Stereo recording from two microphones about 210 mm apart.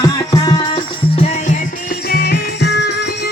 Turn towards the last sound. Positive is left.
turn(degrees=55)  # may be behind; listen again after turning